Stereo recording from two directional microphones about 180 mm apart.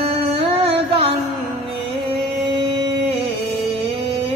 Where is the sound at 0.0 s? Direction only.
30° right (ahead or behind).